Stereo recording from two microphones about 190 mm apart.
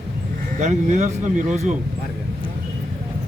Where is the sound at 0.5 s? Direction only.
40° right (ahead or behind).